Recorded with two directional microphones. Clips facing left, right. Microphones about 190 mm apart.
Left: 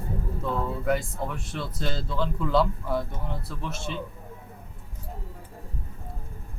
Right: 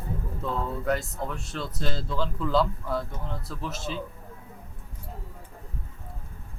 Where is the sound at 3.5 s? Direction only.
Centre (ahead or behind).